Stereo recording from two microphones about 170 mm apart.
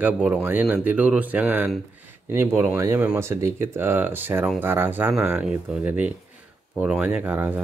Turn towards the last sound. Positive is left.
turn(degrees=-10)  # may be behind; listen again after turning